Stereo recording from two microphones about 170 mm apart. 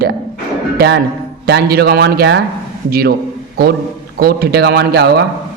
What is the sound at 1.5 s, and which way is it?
Speech, 70° right (ahead or behind).